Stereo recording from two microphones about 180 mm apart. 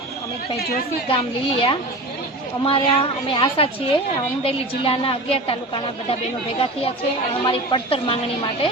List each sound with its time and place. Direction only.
1.0 s a woman's voice: 30° left (ahead or behind)
7.4 s a woman's voice: 30° left (ahead or behind)